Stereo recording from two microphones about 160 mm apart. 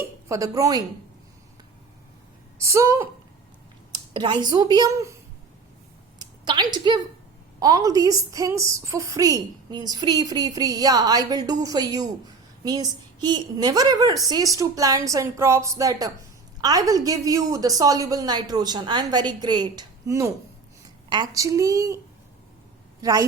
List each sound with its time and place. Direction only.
0.3 s a woman's voice: 20° right (ahead or behind)
2.6 s a woman's voice: 15° right (ahead or behind)
3.9 s speech: 30° right (ahead or behind)
6.1 s a sound: 25° right (ahead or behind)
7.6 s a woman's voice: 20° right (ahead or behind)
23.0 s a woman's voice: 20° right (ahead or behind)